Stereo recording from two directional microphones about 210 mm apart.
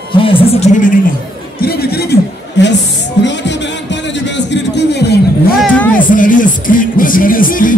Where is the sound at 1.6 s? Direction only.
50° left (ahead or behind).